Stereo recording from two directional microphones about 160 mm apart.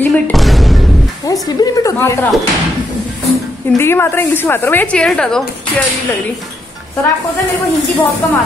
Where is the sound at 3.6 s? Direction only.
15° left (ahead or behind).